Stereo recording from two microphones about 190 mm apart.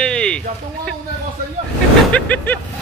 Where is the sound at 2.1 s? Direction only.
10° left (ahead or behind).